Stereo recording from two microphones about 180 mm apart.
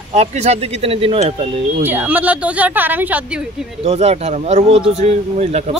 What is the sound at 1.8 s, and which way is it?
Speech, 10° right (ahead or behind).